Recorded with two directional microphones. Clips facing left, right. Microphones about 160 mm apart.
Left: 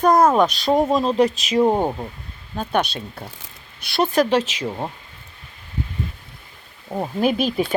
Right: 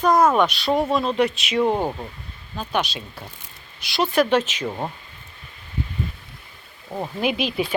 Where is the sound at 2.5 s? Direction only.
50° left (ahead or behind).